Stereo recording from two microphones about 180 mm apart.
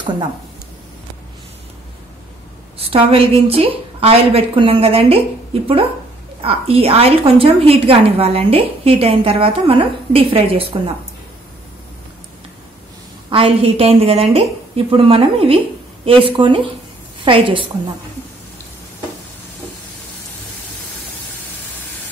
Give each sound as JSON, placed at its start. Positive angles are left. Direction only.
{"t": 2.8, "sound": "a woman's voice", "side_deg": -30}
{"t": 13.3, "sound": "a woman's voice", "side_deg": -30}